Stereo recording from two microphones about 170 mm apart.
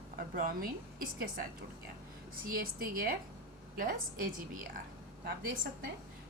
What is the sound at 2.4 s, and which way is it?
Speech, 60° right (ahead or behind).